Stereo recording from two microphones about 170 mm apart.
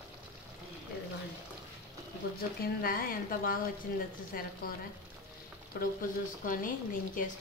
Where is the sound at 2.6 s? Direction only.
60° left (ahead or behind).